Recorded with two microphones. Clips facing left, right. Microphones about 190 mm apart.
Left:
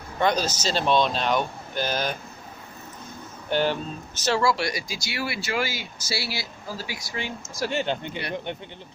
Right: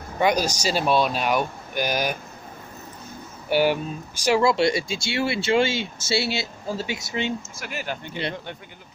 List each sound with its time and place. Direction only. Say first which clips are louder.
0.2 s speech: right 2 dB; 10° right (ahead or behind)
3.4 s speech: right 4 dB; 10° right (ahead or behind)
7.5 s speech: left 6 dB; 30° left (ahead or behind)